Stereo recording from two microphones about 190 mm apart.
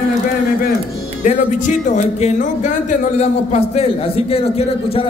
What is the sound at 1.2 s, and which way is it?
A man's voice, 40° left (ahead or behind).